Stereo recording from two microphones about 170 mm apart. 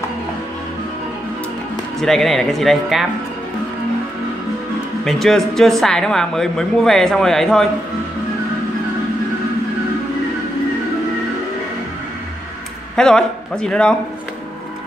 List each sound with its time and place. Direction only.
2.0 s a man's voice: centre (ahead or behind)
5.0 s a man's voice: centre (ahead or behind)
12.9 s speech: 5° left (ahead or behind)